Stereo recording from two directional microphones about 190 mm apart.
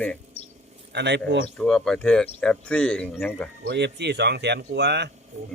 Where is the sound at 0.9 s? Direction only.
65° right (ahead or behind).